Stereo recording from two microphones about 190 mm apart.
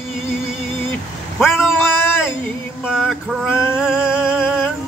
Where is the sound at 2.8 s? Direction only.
Centre (ahead or behind).